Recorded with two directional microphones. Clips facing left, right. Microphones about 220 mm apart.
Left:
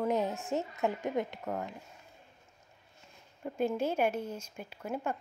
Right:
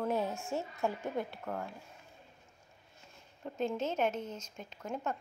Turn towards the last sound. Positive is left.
turn(degrees=10)  # may be behind; listen again after turning